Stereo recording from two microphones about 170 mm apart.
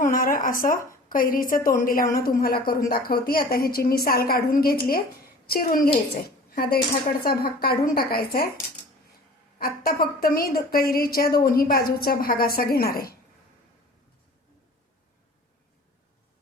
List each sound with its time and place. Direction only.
0.0 s a sound: 55° left (ahead or behind)
1.1 s a woman's voice: 55° left (ahead or behind)
9.6 s a woman's voice: 60° left (ahead or behind)